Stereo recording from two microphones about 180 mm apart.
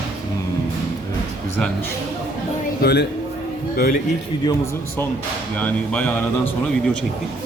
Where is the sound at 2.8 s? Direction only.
70° left (ahead or behind).